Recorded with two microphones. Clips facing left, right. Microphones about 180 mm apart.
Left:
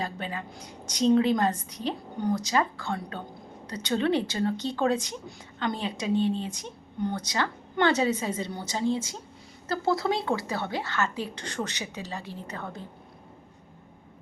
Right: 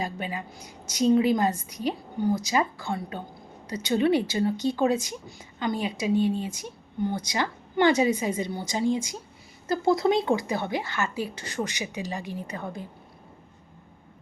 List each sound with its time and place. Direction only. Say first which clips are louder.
0.0 s a woman's voice: right 2 dB; 10° right (ahead or behind)